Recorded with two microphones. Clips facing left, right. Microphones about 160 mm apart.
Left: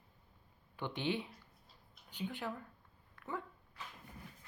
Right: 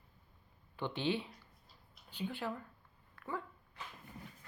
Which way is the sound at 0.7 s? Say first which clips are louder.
Right 2 dB; 15° left (ahead or behind).